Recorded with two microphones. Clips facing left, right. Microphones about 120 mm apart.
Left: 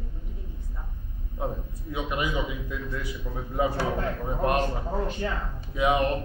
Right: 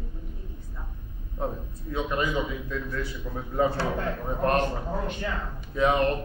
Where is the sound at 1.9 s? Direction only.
15° left (ahead or behind).